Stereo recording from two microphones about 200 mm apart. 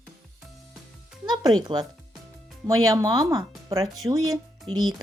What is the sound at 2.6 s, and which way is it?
Speech, 15° right (ahead or behind).